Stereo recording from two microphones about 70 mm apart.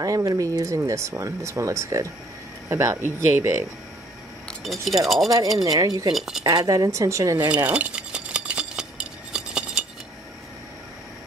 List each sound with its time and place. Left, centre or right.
0.0 s speech: right
2.7 s speech: right
4.8 s speech: centre
5.6 s speech: right
6.1 s speech: centre
6.4 s speech: right
7.5 s cutlery: centre